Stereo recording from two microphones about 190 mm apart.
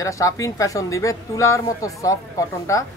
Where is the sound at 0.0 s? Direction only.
15° left (ahead or behind).